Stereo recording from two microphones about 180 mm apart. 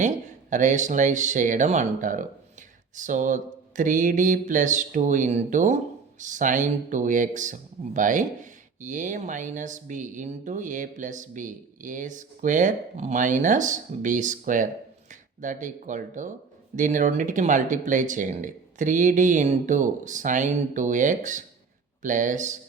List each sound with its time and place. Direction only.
0.5 s mantra: 45° right (ahead or behind)